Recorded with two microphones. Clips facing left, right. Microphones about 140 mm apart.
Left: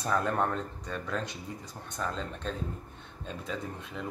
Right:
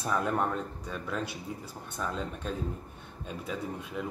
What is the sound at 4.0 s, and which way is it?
Speech, 10° right (ahead or behind).